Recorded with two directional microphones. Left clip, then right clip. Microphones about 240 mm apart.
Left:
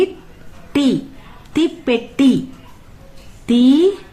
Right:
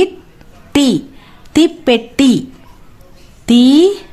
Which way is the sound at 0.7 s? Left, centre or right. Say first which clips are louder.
Right 4 dB; right.